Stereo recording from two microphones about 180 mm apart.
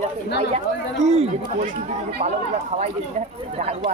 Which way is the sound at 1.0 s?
35° right (ahead or behind).